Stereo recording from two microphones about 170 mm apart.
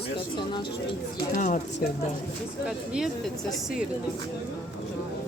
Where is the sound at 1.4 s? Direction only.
50° left (ahead or behind).